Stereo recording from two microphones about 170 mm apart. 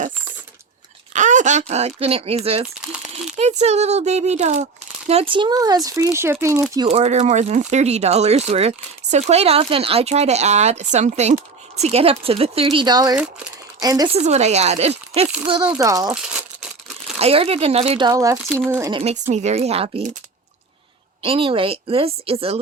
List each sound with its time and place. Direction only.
1.1 s speech: 45° right (ahead or behind); by 6.8 s 15° right (ahead or behind)
6.8 s speech: 40° right (ahead or behind); by 14.1 s 20° right (ahead or behind)
14.1 s speech: 40° right (ahead or behind)
15.7 s speech: 20° right (ahead or behind)
17.2 s speech: 35° right (ahead or behind)
18.1 s speech: 20° right (ahead or behind)
18.9 s speech: 30° right (ahead or behind)
19.1 s speech: 45° right (ahead or behind)
21.2 s speech: 30° right (ahead or behind)